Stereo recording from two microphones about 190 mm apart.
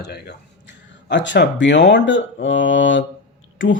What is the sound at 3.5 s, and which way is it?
Speech, 90° left.